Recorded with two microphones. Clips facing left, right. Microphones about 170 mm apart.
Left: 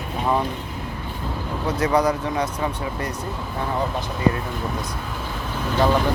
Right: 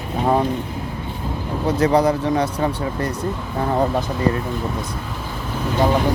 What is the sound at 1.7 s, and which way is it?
Speech, 30° right (ahead or behind).